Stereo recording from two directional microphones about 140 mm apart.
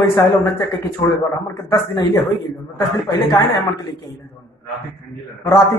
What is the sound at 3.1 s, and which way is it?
Speech, 30° left (ahead or behind).